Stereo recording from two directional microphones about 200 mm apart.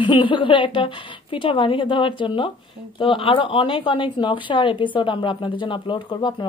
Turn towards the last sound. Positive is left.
turn(degrees=20)  # may be behind; listen again after turning